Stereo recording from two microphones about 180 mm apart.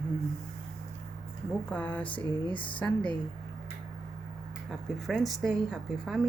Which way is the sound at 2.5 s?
30° left (ahead or behind).